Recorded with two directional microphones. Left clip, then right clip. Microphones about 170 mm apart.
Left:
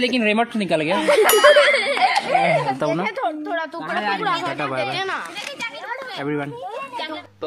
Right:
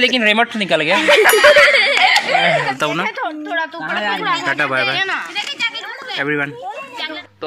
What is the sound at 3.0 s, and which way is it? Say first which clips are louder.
Speech: right 2 dB; 90° left.